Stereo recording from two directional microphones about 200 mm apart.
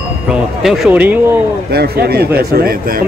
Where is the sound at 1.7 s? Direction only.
50° right (ahead or behind).